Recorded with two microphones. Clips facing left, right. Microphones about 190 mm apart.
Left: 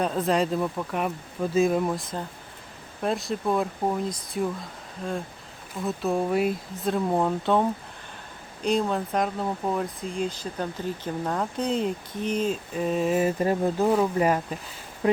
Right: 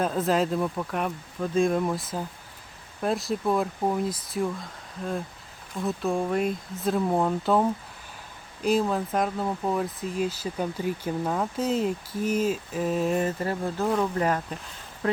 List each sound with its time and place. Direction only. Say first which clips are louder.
0.0 s speech: even; centre (ahead or behind)
5.8 s speech: left 1 dB; centre (ahead or behind)
13.4 s speech: left 5 dB; 15° left (ahead or behind)